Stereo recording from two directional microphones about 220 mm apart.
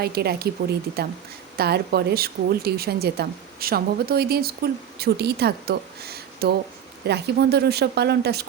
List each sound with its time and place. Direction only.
0.0 s speech: 45° right (ahead or behind)